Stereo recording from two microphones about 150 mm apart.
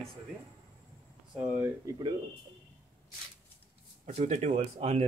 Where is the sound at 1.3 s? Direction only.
10° right (ahead or behind).